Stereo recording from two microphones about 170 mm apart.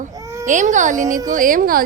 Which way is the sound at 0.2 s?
15° right (ahead or behind).